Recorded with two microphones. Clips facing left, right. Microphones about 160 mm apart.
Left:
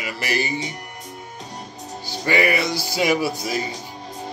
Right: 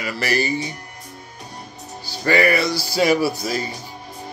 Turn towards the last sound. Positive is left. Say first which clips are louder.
# right 2 dB
turn(degrees=15)  # may be behind; listen again after turning